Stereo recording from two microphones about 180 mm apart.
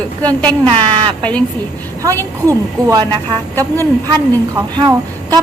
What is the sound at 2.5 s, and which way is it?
A woman's voice, 20° right (ahead or behind).